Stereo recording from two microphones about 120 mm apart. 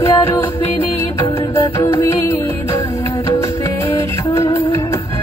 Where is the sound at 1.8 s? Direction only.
25° left (ahead or behind).